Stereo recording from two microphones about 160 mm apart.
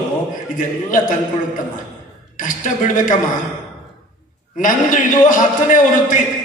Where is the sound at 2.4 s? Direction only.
55° left (ahead or behind).